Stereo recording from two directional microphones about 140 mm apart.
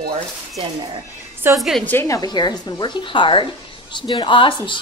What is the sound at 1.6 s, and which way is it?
Speech, centre (ahead or behind).